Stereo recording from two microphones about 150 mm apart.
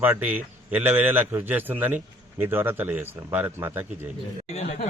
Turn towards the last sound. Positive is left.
turn(degrees=45)  # may be behind; listen again after turning